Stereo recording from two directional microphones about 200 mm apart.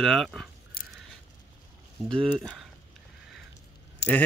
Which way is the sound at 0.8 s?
50° left (ahead or behind).